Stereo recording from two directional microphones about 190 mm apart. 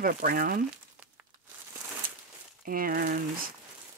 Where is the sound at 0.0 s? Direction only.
50° right (ahead or behind).